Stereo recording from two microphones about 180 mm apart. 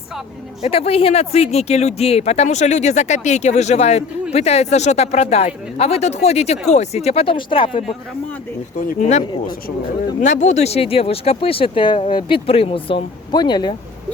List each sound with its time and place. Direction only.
0.6 s speech: 35° left (ahead or behind)
8.8 s speech: 45° left (ahead or behind); by 13.7 s 25° left (ahead or behind)